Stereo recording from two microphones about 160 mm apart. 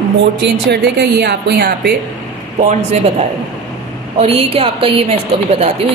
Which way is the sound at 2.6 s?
45° right (ahead or behind).